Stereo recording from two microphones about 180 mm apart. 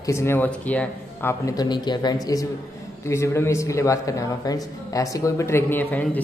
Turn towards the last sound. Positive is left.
turn(degrees=10)  # may be behind; listen again after turning